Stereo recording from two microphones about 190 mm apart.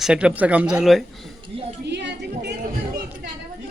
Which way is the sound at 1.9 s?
65° right (ahead or behind).